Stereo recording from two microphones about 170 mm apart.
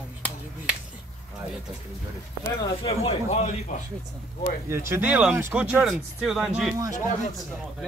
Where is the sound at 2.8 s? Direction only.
40° left (ahead or behind).